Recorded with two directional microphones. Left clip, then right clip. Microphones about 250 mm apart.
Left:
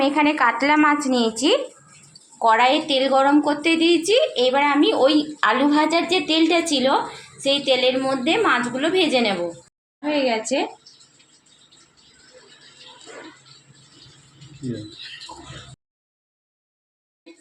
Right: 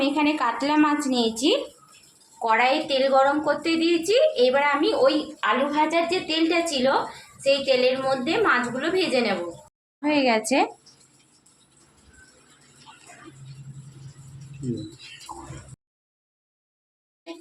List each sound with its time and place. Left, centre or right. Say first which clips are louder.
0.0 s a woman's voice: left 5 dB; centre
10.0 s a woman's voice: even; right